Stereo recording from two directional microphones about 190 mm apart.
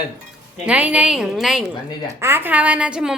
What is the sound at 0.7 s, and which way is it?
A woman's voice, 10° right (ahead or behind).